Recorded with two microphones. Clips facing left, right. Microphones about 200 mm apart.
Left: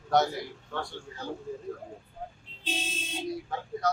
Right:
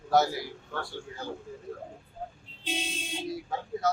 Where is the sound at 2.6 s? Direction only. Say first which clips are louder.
Right 1 dB; 10° right (ahead or behind).